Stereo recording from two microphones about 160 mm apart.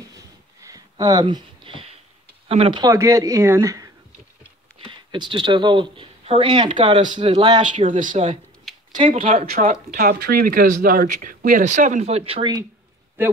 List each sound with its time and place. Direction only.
0.1 s a sound: 20° right (ahead or behind)
2.4 s speech: 35° right (ahead or behind)
2.8 s speech: 20° right (ahead or behind)
4.8 s speech: 30° right (ahead or behind)
7.7 s speech: 50° right (ahead or behind); by 12.6 s 30° right (ahead or behind)